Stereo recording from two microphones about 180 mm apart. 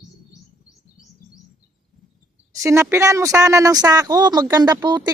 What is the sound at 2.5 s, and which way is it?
Speech, 15° right (ahead or behind).